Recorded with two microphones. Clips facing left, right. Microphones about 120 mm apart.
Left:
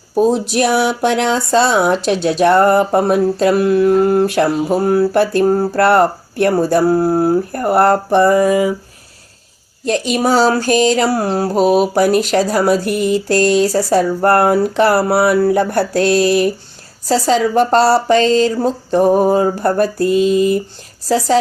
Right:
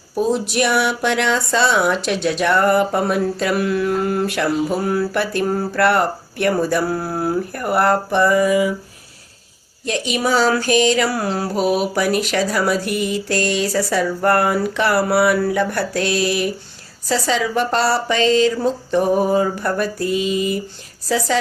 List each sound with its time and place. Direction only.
0.5 s a woman's voice: 35° left (ahead or behind)
9.8 s a woman's voice: 40° left (ahead or behind)